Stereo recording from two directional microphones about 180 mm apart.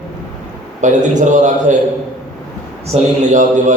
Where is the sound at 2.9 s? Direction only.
35° right (ahead or behind).